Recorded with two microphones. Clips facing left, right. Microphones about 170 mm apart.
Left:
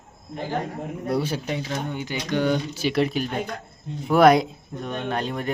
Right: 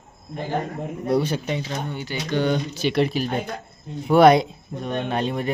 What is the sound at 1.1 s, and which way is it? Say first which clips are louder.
Speech: right 3 dB; 5° left (ahead or behind).